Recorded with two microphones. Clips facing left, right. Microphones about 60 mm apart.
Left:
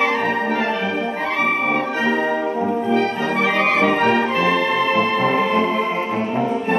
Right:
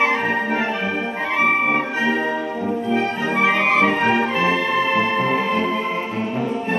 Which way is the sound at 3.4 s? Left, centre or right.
Centre.